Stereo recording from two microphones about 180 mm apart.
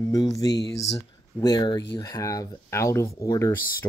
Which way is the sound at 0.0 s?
20° left (ahead or behind).